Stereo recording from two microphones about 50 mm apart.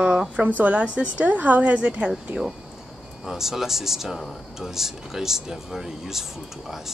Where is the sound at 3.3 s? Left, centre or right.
Centre.